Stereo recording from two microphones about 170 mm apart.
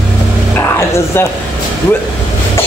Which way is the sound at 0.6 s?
15° left (ahead or behind).